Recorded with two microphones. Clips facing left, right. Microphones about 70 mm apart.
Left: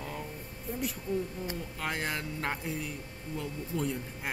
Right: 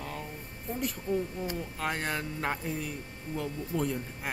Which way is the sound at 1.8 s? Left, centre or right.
Centre.